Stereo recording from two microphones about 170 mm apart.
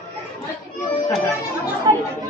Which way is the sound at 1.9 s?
25° right (ahead or behind).